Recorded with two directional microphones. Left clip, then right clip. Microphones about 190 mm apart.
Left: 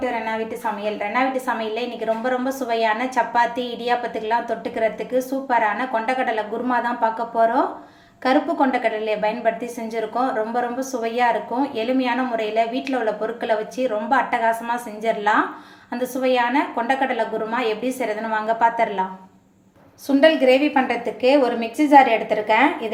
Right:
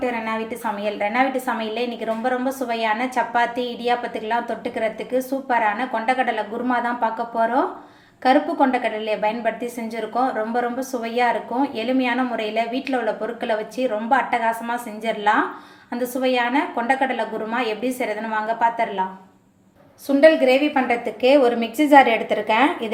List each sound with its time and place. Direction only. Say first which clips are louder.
0.0 s a woman's voice: even; 10° right (ahead or behind); by 19.0 s 10° left (ahead or behind)
20.1 s a woman's voice: right 1 dB; 5° left (ahead or behind)